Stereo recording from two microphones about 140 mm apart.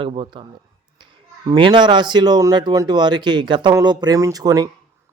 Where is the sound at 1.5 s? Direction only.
35° right (ahead or behind).